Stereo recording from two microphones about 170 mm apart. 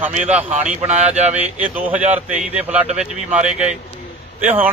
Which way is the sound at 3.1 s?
45° right (ahead or behind).